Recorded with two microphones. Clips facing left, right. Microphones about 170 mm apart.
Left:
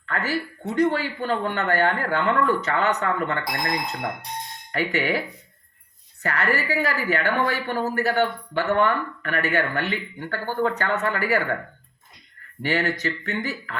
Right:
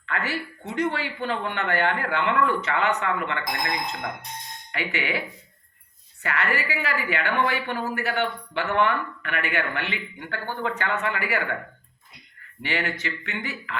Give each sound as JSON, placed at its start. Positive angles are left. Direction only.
{"t": 0.0, "sound": "speech", "side_deg": 40}
{"t": 6.2, "sound": "speech", "side_deg": 40}
{"t": 12.6, "sound": "speech", "side_deg": 40}